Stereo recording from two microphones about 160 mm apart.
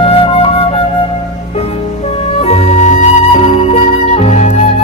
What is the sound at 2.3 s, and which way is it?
Flute, 40° left (ahead or behind).